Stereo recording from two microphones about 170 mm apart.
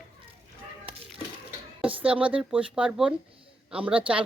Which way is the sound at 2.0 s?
10° right (ahead or behind).